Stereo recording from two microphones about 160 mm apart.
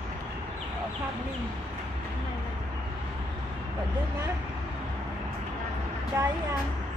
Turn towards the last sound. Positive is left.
turn(degrees=-15)  # may be behind; listen again after turning